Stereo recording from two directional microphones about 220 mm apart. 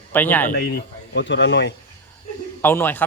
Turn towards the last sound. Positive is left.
turn(degrees=10)  # may be behind; listen again after turning